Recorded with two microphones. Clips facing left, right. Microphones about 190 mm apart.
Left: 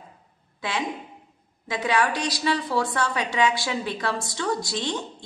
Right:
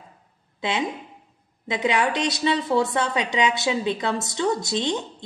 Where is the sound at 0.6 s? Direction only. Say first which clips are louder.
Right 3 dB; 20° right (ahead or behind).